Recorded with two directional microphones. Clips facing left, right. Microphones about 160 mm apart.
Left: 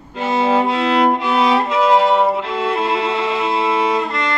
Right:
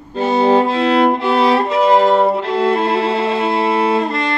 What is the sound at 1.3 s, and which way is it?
Music, 30° right (ahead or behind).